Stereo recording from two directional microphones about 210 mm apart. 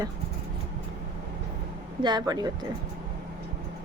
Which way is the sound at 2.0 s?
20° right (ahead or behind).